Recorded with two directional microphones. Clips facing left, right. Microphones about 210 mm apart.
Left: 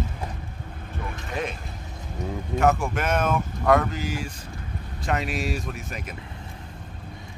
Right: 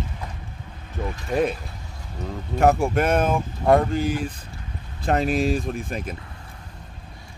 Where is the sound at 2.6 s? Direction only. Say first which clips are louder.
Right 4 dB; 35° right (ahead or behind).